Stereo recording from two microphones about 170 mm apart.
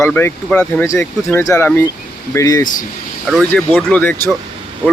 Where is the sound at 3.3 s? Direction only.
Centre (ahead or behind).